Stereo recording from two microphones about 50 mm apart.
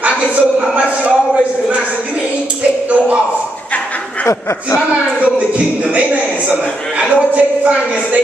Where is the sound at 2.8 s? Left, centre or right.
Right.